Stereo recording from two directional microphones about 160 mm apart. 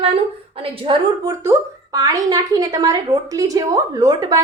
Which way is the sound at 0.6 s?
35° right (ahead or behind).